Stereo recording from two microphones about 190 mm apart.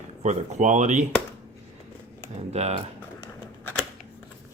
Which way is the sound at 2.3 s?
35° right (ahead or behind).